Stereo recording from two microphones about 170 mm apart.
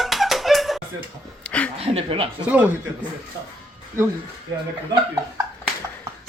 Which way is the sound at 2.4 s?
10° right (ahead or behind).